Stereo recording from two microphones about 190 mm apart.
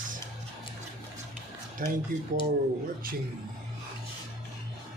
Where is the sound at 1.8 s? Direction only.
45° right (ahead or behind).